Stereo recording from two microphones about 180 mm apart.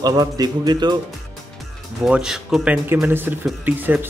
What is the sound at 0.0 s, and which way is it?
Speech, 20° right (ahead or behind).